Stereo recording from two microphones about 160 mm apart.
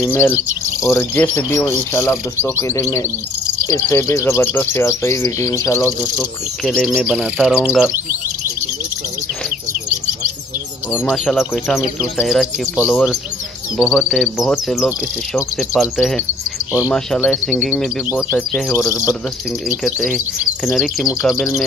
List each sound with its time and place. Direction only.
0.0 s speech: 10° left (ahead or behind)
6.6 s speech: 5° right (ahead or behind)
11.1 s speech: centre (ahead or behind)
20.6 s speech: centre (ahead or behind)